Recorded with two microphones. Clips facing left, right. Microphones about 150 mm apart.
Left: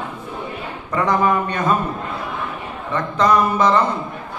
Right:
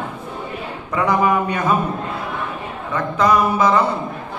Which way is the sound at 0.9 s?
10° right (ahead or behind).